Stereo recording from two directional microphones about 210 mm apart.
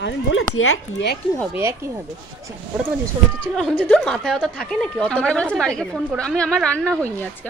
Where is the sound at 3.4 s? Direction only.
5° left (ahead or behind).